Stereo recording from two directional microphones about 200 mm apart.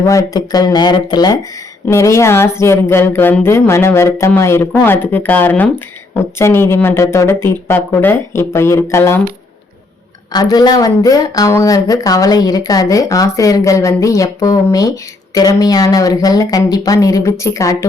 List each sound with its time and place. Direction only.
0.0 s speech: 15° left (ahead or behind)
10.3 s speech: 20° left (ahead or behind)